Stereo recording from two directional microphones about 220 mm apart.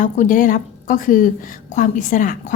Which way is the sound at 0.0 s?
35° left (ahead or behind).